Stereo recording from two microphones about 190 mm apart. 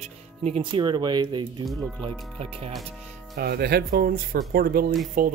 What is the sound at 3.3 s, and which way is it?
Speech, 55° right (ahead or behind).